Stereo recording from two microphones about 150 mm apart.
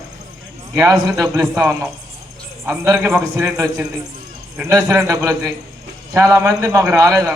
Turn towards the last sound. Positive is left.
turn(degrees=-20)  # may be behind; listen again after turning